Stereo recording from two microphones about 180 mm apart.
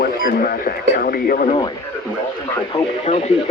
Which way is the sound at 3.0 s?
40° left (ahead or behind).